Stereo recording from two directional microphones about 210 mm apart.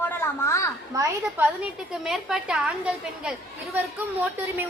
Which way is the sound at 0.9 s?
15° right (ahead or behind).